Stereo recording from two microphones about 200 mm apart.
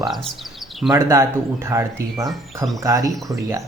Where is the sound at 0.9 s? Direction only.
15° right (ahead or behind).